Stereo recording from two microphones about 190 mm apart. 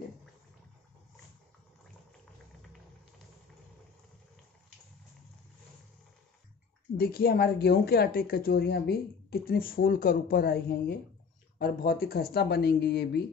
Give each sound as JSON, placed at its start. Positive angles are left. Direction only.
{"t": 7.0, "sound": "a woman's voice", "side_deg": 55}